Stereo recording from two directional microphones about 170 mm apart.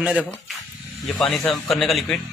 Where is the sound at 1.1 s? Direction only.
5° left (ahead or behind).